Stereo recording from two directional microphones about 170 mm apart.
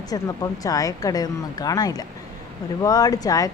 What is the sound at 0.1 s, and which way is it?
Speech, 20° left (ahead or behind).